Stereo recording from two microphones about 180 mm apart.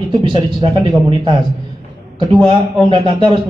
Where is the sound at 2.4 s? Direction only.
30° right (ahead or behind).